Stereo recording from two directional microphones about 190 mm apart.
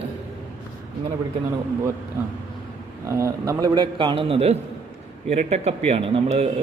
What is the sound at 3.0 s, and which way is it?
A man's voice, 15° right (ahead or behind).